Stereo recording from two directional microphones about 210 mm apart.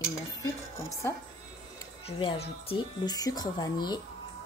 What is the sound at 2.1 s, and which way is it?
Speech, 25° left (ahead or behind).